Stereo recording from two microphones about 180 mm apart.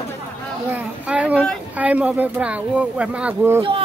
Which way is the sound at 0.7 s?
5° right (ahead or behind).